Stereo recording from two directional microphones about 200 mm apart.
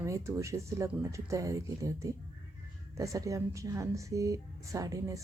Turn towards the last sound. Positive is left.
turn(degrees=-15)  # may be behind; listen again after turning